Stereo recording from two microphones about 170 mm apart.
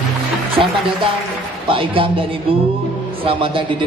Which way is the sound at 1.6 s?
30° right (ahead or behind).